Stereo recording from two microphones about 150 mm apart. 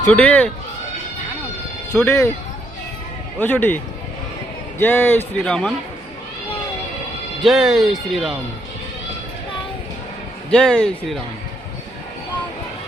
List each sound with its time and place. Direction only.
0.1 s a man's voice: 10° left (ahead or behind)
2.0 s a man's voice: 15° left (ahead or behind)
3.3 s a man's voice: 10° left (ahead or behind)
4.8 s a man's voice: 15° left (ahead or behind)
7.4 s speech: 5° right (ahead or behind)
10.5 s speech: 5° left (ahead or behind)